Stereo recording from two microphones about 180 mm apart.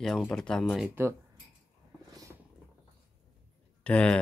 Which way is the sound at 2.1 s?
20° right (ahead or behind).